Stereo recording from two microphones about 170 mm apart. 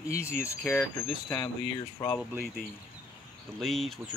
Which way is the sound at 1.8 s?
20° left (ahead or behind).